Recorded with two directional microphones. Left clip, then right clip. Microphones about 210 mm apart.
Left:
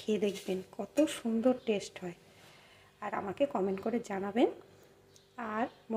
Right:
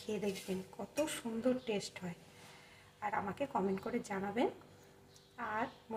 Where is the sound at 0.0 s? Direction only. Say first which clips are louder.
Left 7 dB; 40° left (ahead or behind).